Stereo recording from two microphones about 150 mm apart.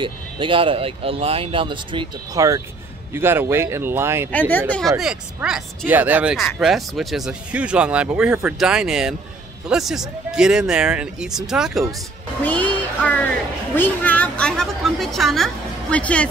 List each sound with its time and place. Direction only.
0.0 s speech: 35° right (ahead or behind)
3.1 s speech: 15° right (ahead or behind)
4.3 s a woman's voice: 10° left (ahead or behind)
4.9 s speech: 5° right (ahead or behind)
12.4 s a woman's voice: 10° left (ahead or behind)